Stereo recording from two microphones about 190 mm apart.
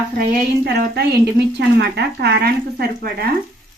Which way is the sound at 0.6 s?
55° right (ahead or behind).